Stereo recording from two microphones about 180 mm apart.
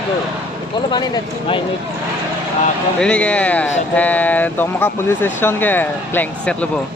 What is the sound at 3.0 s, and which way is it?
Speech, 5° left (ahead or behind).